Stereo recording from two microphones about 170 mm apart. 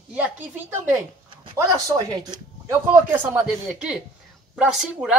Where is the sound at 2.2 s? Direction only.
25° right (ahead or behind).